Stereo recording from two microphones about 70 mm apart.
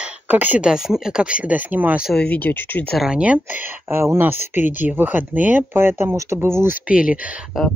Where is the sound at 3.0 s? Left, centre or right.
Centre.